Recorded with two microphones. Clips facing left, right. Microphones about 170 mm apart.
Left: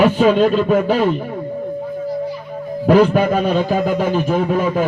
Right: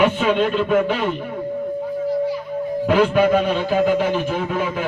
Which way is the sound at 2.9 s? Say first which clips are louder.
Left 3 dB; 40° left (ahead or behind).